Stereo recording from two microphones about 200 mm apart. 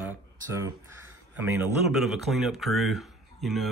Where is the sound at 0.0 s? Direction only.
10° right (ahead or behind).